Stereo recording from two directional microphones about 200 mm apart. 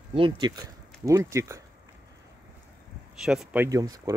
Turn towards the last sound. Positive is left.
turn(degrees=-20)  # may be behind; listen again after turning